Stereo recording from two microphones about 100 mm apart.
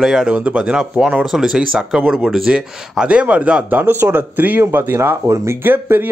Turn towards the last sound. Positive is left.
turn(degrees=-20)  # may be behind; listen again after turning